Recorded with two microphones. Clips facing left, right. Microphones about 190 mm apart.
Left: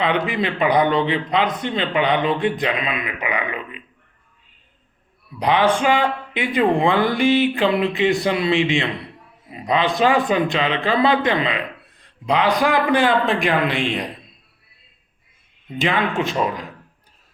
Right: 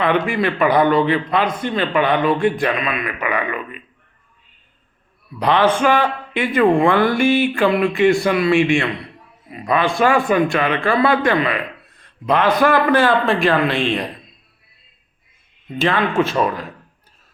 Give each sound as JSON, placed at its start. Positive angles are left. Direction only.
{"t": 0.0, "sound": "a man's voice", "side_deg": 20}
{"t": 5.4, "sound": "a man's voice", "side_deg": 15}
{"t": 15.8, "sound": "speech", "side_deg": 15}